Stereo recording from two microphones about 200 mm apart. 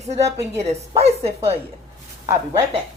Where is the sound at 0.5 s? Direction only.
30° right (ahead or behind).